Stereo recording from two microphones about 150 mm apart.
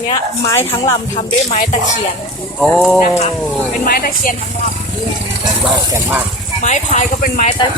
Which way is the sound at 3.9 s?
75° left (ahead or behind).